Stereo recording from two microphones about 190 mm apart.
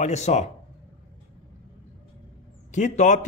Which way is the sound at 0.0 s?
35° left (ahead or behind).